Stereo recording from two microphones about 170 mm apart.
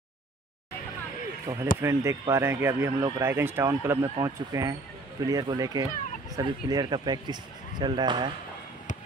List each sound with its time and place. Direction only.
1.8 s speech: 15° right (ahead or behind)